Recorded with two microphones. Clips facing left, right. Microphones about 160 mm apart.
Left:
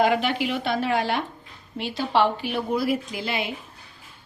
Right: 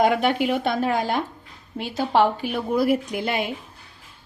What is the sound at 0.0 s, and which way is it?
A woman's voice, 50° right (ahead or behind).